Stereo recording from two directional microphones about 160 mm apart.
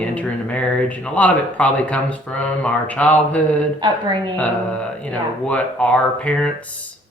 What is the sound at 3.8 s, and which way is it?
Speech, 30° right (ahead or behind).